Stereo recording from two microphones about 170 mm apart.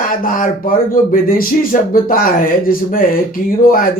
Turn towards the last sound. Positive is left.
turn(degrees=55)  # may be behind; listen again after turning